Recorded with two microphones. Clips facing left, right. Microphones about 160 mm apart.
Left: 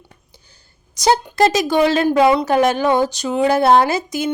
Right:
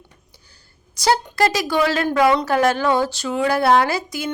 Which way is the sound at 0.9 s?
20° left (ahead or behind).